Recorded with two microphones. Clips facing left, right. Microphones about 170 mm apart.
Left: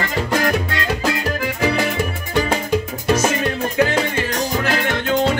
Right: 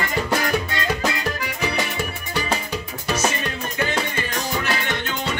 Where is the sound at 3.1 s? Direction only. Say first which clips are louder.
Left 5 dB; 90° left.